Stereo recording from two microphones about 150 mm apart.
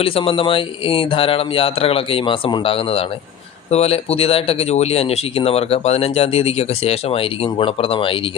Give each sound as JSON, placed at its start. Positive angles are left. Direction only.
{"t": 0.0, "sound": "speech", "side_deg": 40}